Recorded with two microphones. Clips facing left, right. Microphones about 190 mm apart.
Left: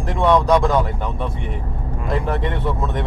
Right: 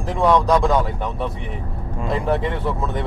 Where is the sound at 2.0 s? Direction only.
Centre (ahead or behind).